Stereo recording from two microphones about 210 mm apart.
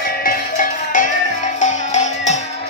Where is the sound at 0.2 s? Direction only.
40° left (ahead or behind).